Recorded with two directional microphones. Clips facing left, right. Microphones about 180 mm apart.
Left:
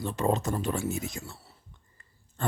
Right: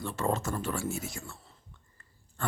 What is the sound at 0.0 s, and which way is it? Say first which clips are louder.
Speech: left 3 dB; 15° left (ahead or behind).